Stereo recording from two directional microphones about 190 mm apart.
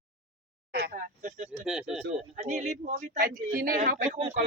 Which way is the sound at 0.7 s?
55° right (ahead or behind).